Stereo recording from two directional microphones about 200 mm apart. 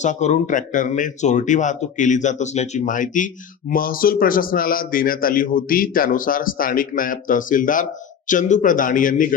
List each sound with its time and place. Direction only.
0.0 s speech: 35° left (ahead or behind)